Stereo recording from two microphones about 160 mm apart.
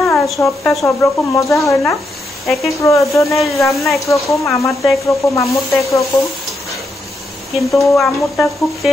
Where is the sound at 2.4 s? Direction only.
Centre (ahead or behind).